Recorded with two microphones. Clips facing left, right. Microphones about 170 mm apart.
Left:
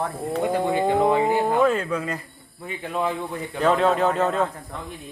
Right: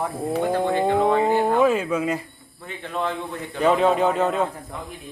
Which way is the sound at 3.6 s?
5° right (ahead or behind).